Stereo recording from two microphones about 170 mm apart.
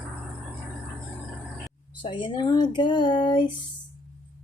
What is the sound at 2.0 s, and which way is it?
Speech, 30° left (ahead or behind).